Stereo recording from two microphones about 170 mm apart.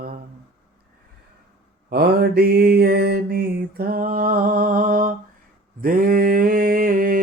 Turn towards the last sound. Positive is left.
turn(degrees=-55)  # may be behind; listen again after turning